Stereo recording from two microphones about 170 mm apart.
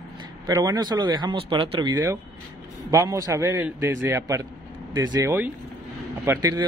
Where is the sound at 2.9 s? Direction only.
20° right (ahead or behind).